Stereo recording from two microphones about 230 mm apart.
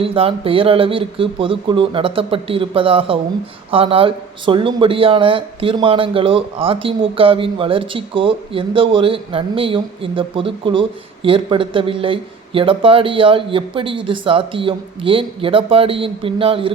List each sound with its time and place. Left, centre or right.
0.0 s speech: right